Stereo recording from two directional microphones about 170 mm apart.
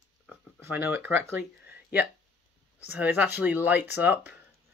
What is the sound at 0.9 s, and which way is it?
Speech, 15° right (ahead or behind).